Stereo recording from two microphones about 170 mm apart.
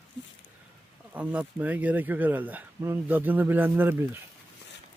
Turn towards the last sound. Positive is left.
turn(degrees=-10)  # may be behind; listen again after turning